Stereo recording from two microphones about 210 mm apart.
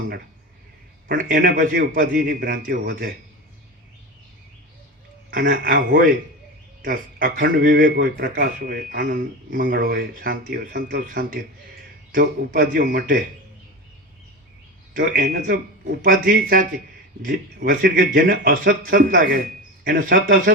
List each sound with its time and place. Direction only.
1.0 s speech: 40° right (ahead or behind)
5.3 s speech: 40° right (ahead or behind)
14.9 s speech: 40° right (ahead or behind)